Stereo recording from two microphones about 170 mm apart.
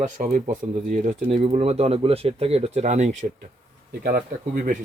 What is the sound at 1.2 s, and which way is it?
Speech, 35° right (ahead or behind).